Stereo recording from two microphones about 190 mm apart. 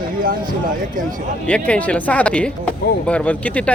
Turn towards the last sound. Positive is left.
turn(degrees=5)  # may be behind; listen again after turning